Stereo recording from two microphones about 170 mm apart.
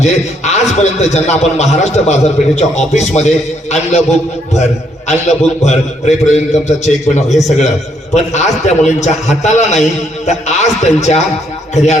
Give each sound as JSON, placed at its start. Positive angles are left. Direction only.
{"t": 0.0, "sound": "a man's voice", "side_deg": 40}